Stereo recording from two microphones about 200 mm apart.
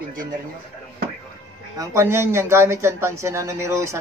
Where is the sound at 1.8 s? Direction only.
15° right (ahead or behind).